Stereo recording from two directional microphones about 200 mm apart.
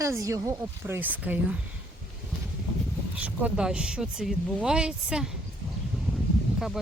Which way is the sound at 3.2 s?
5° right (ahead or behind).